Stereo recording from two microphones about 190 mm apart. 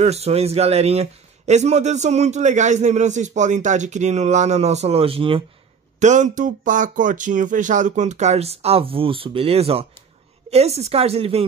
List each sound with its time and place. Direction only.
0.0 s a man's voice: 35° right (ahead or behind)
5.9 s a man's voice: 40° right (ahead or behind)